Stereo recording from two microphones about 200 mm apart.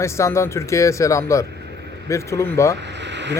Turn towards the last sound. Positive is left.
turn(degrees=-60)  # may be behind; listen again after turning